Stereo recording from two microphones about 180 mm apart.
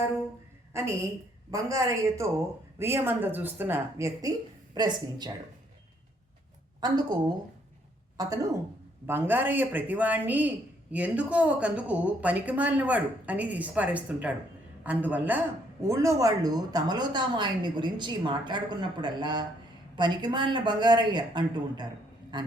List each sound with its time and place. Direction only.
0.7 s a woman's voice: 15° right (ahead or behind)
6.7 s a woman's voice: 25° right (ahead or behind)
8.2 s a man's voice: 20° right (ahead or behind)